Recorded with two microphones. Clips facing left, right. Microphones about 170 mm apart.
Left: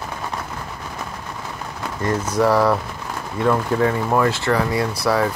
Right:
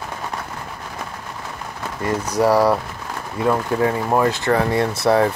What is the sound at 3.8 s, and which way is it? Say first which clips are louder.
Speech: even; 20° right (ahead or behind).